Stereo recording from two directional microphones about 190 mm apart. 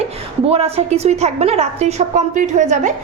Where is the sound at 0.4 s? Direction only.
35° right (ahead or behind).